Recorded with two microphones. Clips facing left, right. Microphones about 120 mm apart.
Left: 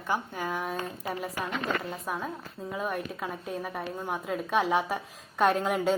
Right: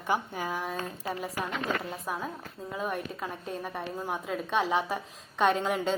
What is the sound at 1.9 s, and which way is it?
A woman's voice, centre (ahead or behind).